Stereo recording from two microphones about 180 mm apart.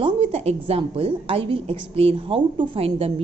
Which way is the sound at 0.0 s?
35° right (ahead or behind).